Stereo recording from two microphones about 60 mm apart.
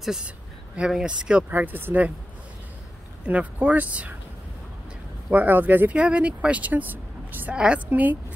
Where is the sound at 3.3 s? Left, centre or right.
Right.